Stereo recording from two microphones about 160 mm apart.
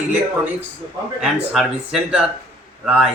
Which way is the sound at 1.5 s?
5° right (ahead or behind).